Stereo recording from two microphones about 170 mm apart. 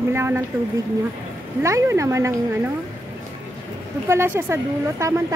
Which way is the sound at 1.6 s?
15° right (ahead or behind).